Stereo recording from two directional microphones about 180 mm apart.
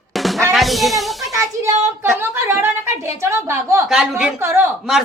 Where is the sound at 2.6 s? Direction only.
15° right (ahead or behind).